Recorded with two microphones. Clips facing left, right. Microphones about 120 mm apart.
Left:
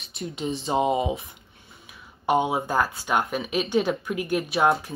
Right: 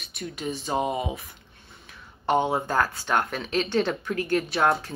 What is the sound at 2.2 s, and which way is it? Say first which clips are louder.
Speech: left 1 dB; 5° left (ahead or behind).